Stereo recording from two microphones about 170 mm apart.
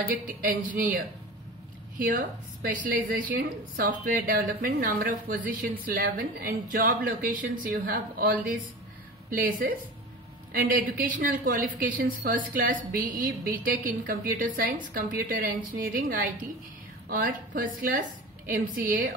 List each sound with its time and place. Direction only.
0.1 s a woman's voice: 55° right (ahead or behind)
3.3 s a woman's voice: 55° right (ahead or behind)